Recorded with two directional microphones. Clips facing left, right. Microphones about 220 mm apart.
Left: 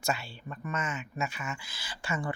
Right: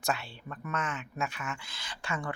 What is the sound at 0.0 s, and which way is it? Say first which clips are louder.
Speech: even; centre (ahead or behind).